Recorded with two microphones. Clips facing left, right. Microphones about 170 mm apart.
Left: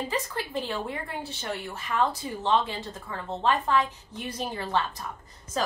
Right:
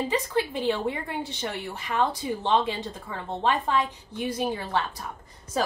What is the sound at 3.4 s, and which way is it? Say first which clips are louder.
Speech: even; 15° right (ahead or behind).